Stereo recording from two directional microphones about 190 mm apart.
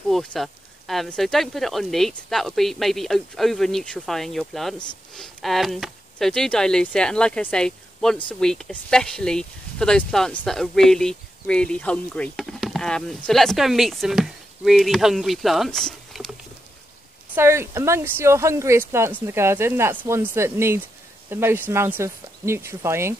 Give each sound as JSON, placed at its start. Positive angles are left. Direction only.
{"t": 0.1, "sound": "speech", "side_deg": 0}
{"t": 17.4, "sound": "speech", "side_deg": -15}